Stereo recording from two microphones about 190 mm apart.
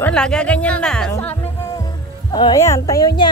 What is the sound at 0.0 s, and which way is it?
A woman's voice, 5° left (ahead or behind).